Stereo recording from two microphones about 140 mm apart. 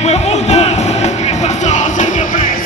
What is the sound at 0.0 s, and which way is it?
Music, 50° left (ahead or behind).